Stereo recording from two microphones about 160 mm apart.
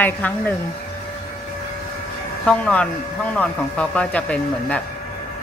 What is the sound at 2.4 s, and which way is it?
Speech, 5° left (ahead or behind).